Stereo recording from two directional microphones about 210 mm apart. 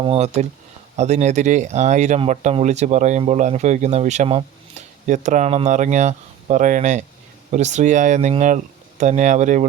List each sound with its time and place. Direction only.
0.0 s speech: 30° right (ahead or behind)